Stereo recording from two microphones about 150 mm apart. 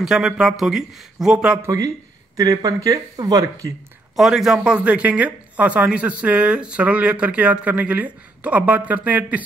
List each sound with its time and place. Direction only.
0.0 s speech: 5° right (ahead or behind)
1.6 s speech: 20° right (ahead or behind)
4.2 s speech: 5° right (ahead or behind)